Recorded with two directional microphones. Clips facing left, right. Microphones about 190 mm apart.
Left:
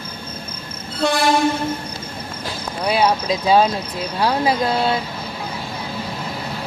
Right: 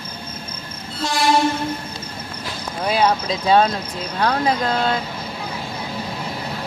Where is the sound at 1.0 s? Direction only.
60° left (ahead or behind).